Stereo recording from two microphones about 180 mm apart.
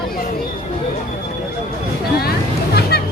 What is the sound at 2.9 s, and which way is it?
Music, 60° left (ahead or behind).